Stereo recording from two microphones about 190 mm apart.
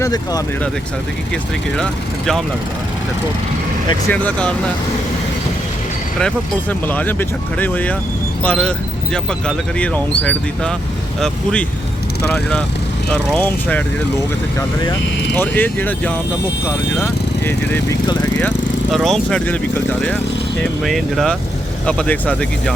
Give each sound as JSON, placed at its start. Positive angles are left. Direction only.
{"t": 0.0, "sound": "speech", "side_deg": 20}
{"t": 1.7, "sound": "speech", "side_deg": 5}
{"t": 4.1, "sound": "speech", "side_deg": 10}
{"t": 6.1, "sound": "speech", "side_deg": 5}
{"t": 12.2, "sound": "speech", "side_deg": 5}
{"t": 15.4, "sound": "speech", "side_deg": 10}